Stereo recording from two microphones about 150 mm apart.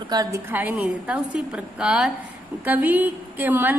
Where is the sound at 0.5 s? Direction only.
10° right (ahead or behind).